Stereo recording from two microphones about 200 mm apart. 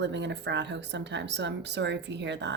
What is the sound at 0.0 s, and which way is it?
A woman's voice, 60° right (ahead or behind).